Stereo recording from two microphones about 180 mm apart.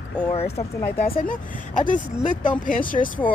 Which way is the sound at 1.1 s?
45° left (ahead or behind).